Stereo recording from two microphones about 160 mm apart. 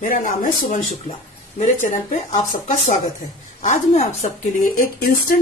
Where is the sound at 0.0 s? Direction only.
60° left (ahead or behind).